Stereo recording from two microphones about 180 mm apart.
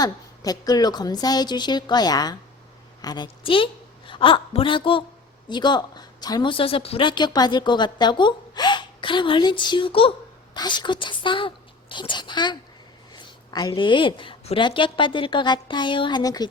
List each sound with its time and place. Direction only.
0.0 s a woman's voice: 20° left (ahead or behind)